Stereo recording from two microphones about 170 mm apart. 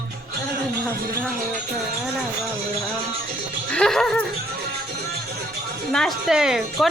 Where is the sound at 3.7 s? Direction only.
5° left (ahead or behind).